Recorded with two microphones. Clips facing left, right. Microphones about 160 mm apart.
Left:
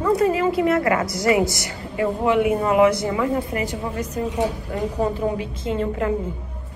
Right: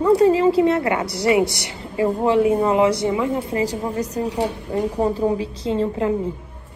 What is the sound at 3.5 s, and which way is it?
A woman's voice, 35° right (ahead or behind).